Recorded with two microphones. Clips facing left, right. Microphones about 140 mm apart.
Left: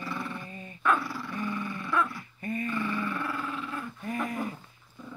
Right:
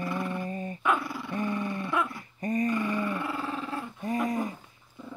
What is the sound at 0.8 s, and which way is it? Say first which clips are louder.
Dog: left 2 dB; 20° right (ahead or behind).